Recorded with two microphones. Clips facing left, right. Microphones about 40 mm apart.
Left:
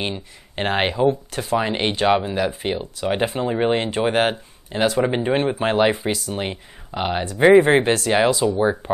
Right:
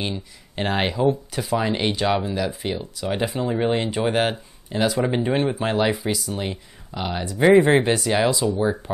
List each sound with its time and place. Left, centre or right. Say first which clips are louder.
0.0 s speech: left 1 dB; left
1.0 s speech: left 2 dB; centre
1.6 s speech: left 2 dB; centre
7.5 s speech: left 1 dB; centre